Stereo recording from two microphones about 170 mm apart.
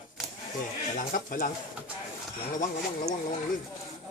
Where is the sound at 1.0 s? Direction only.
50° left (ahead or behind).